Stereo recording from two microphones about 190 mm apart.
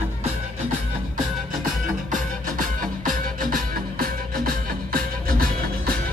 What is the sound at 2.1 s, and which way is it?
Music, 45° right (ahead or behind).